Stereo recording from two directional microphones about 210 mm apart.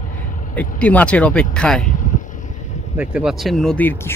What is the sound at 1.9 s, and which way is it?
Vehicle, 40° left (ahead or behind).